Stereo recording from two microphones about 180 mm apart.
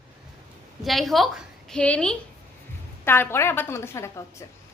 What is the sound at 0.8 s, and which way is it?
A woman's voice, centre (ahead or behind).